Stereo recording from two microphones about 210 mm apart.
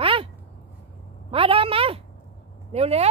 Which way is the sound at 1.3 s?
25° right (ahead or behind).